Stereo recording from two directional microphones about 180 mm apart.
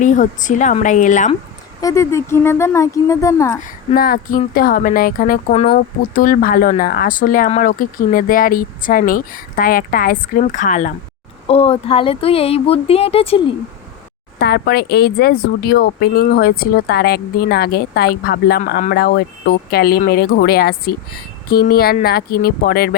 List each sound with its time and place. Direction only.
0.0 s speech: 45° left (ahead or behind)
1.8 s speech: 20° left (ahead or behind)
3.6 s speech: 55° left (ahead or behind); by 5.7 s 40° left (ahead or behind)
5.7 s speech: 50° left (ahead or behind)
11.4 s speech: 35° left (ahead or behind)
14.3 s speech: 60° left (ahead or behind)